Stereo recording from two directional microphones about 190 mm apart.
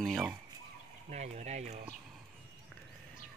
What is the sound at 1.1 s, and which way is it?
Speech, 35° right (ahead or behind).